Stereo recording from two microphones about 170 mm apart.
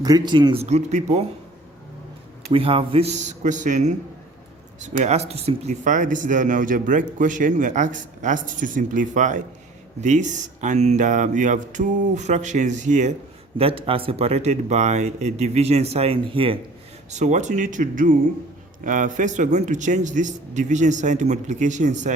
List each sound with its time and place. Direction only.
0.0 s speech: 25° right (ahead or behind); by 1.2 s 40° right (ahead or behind)
2.5 s speech: 35° right (ahead or behind)
13.6 s speech: 35° right (ahead or behind)
17.1 s speech: 45° right (ahead or behind)